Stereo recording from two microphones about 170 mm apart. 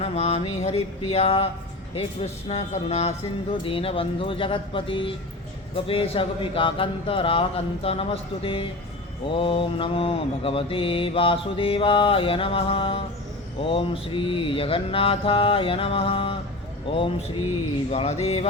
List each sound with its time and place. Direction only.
0.0 s mantra: 35° left (ahead or behind)